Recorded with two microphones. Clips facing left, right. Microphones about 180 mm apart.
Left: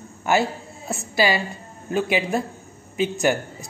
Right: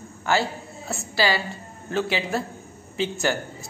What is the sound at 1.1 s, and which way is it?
A woman's voice, 20° left (ahead or behind).